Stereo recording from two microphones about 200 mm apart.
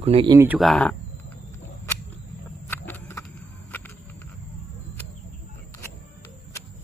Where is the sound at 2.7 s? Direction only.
10° left (ahead or behind).